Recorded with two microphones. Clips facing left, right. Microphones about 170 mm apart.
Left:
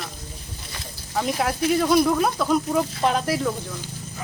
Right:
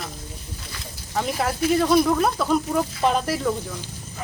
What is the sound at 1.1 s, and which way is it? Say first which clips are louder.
Speech: left 1 dB; centre (ahead or behind).